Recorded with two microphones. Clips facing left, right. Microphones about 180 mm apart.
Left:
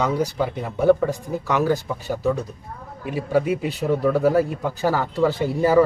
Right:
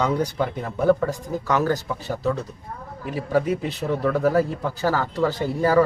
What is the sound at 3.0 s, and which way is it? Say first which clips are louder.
A man's voice: left 1 dB; 10° left (ahead or behind).